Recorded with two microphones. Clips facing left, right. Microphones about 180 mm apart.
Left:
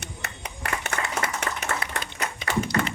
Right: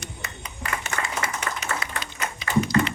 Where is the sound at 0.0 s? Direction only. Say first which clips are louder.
Left 1 dB; 65° left (ahead or behind).